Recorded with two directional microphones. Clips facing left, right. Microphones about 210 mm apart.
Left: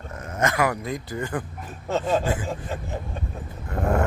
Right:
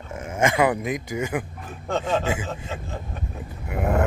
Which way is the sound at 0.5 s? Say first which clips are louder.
Right 3 dB; 25° right (ahead or behind).